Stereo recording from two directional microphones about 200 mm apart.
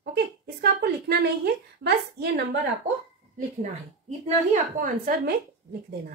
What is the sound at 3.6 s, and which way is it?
A woman's voice, 35° right (ahead or behind).